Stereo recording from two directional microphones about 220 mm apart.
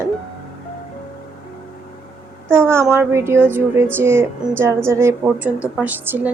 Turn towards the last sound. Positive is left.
turn(degrees=-10)  # may be behind; listen again after turning